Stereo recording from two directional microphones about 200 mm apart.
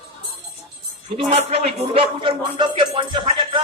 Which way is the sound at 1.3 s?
30° right (ahead or behind).